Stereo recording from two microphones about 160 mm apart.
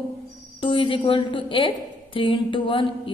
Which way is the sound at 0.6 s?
35° left (ahead or behind).